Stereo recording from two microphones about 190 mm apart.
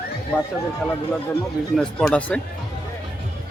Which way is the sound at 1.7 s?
5° left (ahead or behind).